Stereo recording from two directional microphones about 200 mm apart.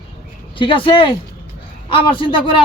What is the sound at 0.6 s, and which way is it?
A man's voice, 25° left (ahead or behind).